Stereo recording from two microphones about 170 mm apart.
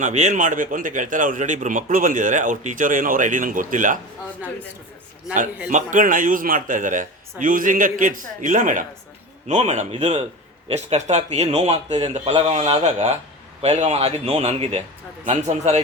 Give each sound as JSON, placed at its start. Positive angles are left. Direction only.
{"t": 0.0, "sound": "a man's voice", "side_deg": -45}
{"t": 5.7, "sound": "a man's voice", "side_deg": -50}